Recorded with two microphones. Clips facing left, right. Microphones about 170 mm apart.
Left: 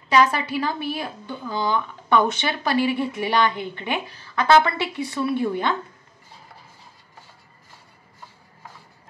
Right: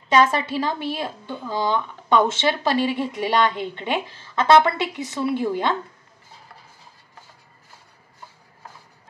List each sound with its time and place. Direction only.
0.1 s a woman's voice: 25° right (ahead or behind)